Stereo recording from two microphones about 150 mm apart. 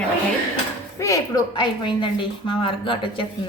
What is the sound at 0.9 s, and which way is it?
A woman's voice, 20° left (ahead or behind).